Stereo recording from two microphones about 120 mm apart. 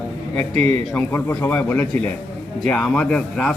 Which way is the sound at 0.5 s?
55° right (ahead or behind).